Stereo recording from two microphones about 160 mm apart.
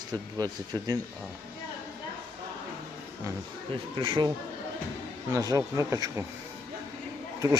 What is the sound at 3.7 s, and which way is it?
Speech, 30° right (ahead or behind).